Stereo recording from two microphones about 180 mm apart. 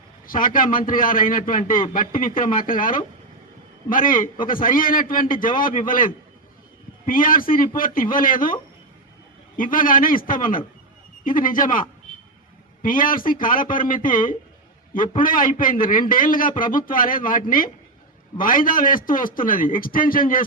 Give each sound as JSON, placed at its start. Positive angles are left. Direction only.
{"t": 0.3, "sound": "a man's voice", "side_deg": 50}
{"t": 9.6, "sound": "a man's voice", "side_deg": 50}